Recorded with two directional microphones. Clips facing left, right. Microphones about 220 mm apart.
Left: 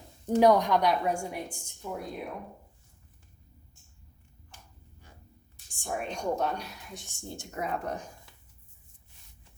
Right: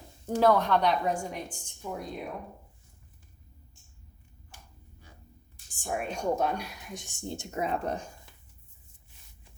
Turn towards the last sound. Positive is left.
turn(degrees=-25)  # may be behind; listen again after turning